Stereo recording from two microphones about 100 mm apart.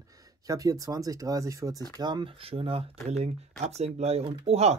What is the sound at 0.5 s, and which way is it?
Speech, 40° right (ahead or behind).